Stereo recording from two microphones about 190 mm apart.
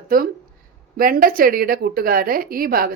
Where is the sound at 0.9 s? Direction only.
50° right (ahead or behind).